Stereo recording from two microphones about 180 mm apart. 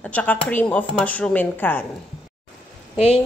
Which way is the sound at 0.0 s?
5° left (ahead or behind).